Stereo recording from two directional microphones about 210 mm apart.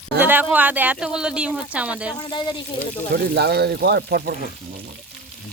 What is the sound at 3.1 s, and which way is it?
Speech, 50° right (ahead or behind).